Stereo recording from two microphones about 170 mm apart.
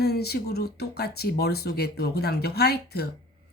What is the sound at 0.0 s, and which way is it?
Speech, 70° left (ahead or behind).